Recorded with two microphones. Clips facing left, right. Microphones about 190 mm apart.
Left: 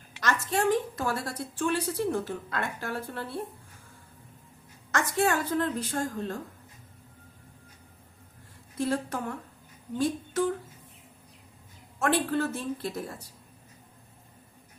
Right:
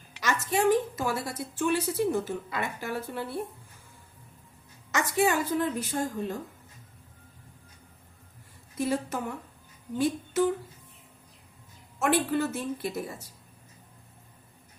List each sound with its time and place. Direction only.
0.2 s speech: 5° right (ahead or behind)
4.9 s speech: 5° right (ahead or behind)
8.8 s speech: 5° right (ahead or behind)
11.9 s speech: 5° right (ahead or behind)